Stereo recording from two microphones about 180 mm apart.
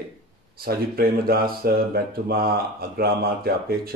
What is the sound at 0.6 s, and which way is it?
Speech, 60° right (ahead or behind).